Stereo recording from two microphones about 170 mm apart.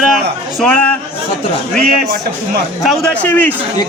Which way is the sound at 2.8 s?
5° left (ahead or behind).